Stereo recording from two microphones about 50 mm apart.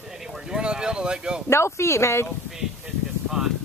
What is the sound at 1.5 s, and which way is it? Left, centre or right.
Speech, left.